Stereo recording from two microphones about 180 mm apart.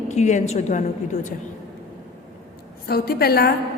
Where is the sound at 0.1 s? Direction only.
40° left (ahead or behind).